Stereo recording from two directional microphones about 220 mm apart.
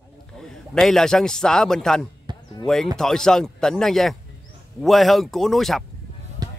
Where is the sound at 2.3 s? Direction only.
20° right (ahead or behind).